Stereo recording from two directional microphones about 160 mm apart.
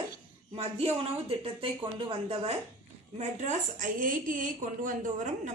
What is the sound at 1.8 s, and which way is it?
Speech, 35° right (ahead or behind).